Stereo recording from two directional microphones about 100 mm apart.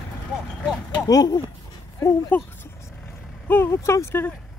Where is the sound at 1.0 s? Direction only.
40° left (ahead or behind).